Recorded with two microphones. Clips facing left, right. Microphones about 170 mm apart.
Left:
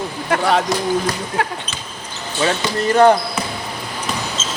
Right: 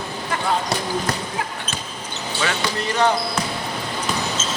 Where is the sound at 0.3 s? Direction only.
75° left (ahead or behind).